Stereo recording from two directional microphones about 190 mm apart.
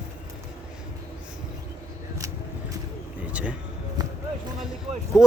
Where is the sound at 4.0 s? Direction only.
20° right (ahead or behind).